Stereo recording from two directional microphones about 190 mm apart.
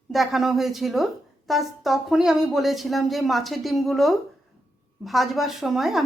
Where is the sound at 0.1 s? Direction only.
Centre (ahead or behind).